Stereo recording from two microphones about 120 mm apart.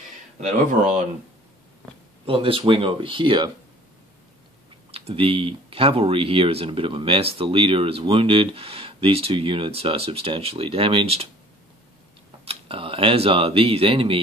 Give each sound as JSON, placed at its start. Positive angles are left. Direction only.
{"t": 2.2, "sound": "speech", "side_deg": -50}
{"t": 4.9, "sound": "speech", "side_deg": -50}
{"t": 12.4, "sound": "speech", "side_deg": -50}